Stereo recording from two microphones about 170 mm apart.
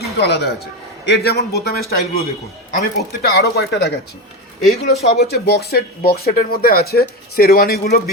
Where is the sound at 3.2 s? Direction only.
70° left (ahead or behind).